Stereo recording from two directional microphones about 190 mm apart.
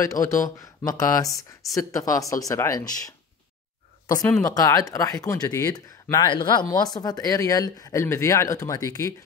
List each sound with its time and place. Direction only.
0.0 s speech: 15° left (ahead or behind)
4.4 s speech: 20° left (ahead or behind)